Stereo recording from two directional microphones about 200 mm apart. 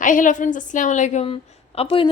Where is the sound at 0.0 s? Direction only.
40° left (ahead or behind).